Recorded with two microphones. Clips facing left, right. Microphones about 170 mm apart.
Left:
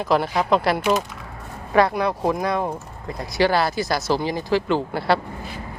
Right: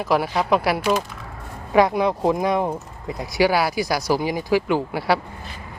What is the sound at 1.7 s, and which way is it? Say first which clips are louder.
Speech: right 1 dB; 15° right (ahead or behind).